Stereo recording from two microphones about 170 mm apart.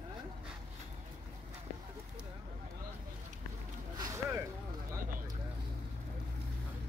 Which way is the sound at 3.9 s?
20° right (ahead or behind).